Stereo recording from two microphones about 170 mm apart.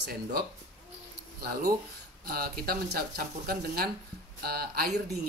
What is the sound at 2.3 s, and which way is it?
Speech, 65° right (ahead or behind).